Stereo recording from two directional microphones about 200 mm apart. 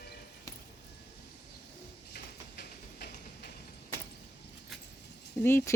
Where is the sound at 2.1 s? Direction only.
55° left (ahead or behind).